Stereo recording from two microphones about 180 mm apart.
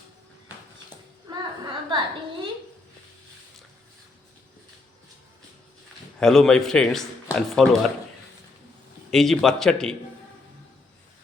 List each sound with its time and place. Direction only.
1.9 s a sound: 25° right (ahead or behind)
6.1 s speech: centre (ahead or behind)
9.0 s speech: centre (ahead or behind)